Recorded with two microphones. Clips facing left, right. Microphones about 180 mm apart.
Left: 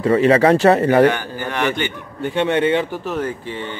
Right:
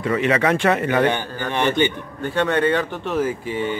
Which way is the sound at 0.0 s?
35° left (ahead or behind).